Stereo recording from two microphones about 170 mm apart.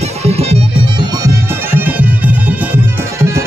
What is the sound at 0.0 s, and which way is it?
Music, 40° right (ahead or behind).